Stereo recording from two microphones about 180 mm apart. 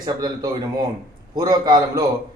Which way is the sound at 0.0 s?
20° right (ahead or behind).